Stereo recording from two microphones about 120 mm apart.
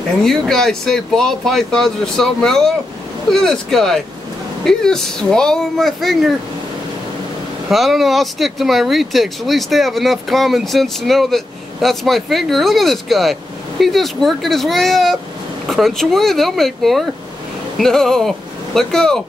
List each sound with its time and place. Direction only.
0.2 s speech: 5° left (ahead or behind)
7.7 s speech: centre (ahead or behind)